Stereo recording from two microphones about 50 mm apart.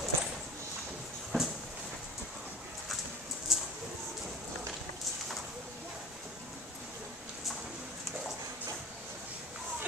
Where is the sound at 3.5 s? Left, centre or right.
Centre.